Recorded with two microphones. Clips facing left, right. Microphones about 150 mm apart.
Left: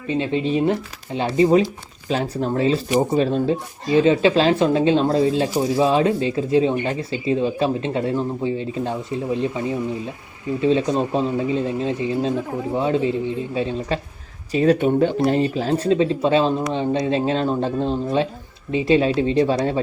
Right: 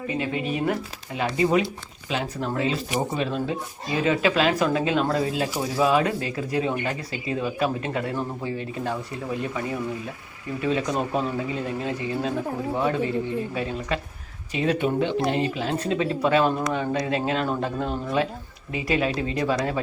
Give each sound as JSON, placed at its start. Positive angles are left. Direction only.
{"t": 0.1, "sound": "speech", "side_deg": 25}
{"t": 14.5, "sound": "speech", "side_deg": 40}